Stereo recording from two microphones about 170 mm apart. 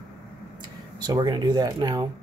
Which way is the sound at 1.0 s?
25° right (ahead or behind).